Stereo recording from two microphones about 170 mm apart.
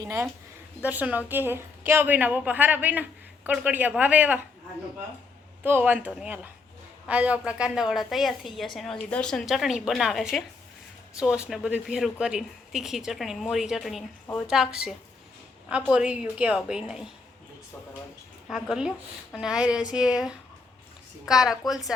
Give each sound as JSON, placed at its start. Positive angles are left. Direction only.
{"t": 0.0, "sound": "a woman's voice", "side_deg": -20}
{"t": 5.6, "sound": "a woman's voice", "side_deg": -10}
{"t": 18.4, "sound": "speech", "side_deg": 0}